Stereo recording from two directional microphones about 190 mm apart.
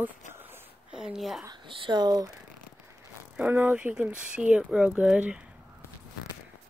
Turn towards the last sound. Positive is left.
turn(degrees=-5)  # may be behind; listen again after turning